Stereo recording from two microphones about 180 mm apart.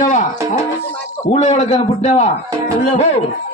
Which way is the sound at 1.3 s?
40° left (ahead or behind).